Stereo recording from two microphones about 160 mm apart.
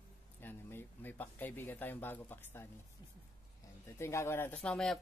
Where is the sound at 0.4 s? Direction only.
15° left (ahead or behind).